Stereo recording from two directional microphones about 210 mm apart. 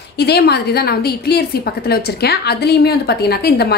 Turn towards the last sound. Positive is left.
turn(degrees=50)  # may be behind; listen again after turning